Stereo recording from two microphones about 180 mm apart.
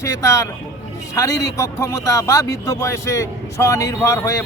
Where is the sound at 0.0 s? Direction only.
15° left (ahead or behind).